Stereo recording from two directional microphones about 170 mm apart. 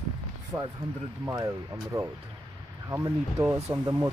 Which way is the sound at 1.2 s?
20° right (ahead or behind).